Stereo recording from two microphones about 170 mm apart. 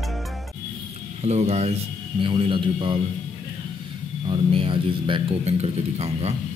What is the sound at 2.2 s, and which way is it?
Music, 30° right (ahead or behind).